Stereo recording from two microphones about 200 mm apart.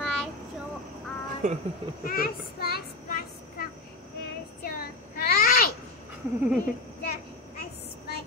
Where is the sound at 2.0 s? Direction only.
50° left (ahead or behind).